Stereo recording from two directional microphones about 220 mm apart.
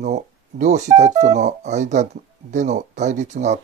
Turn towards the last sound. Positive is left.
turn(degrees=-30)  # may be behind; listen again after turning